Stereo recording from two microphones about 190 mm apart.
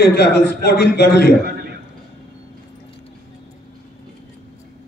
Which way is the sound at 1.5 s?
55° right (ahead or behind).